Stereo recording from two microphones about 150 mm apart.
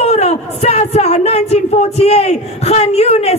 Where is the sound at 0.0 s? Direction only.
45° left (ahead or behind).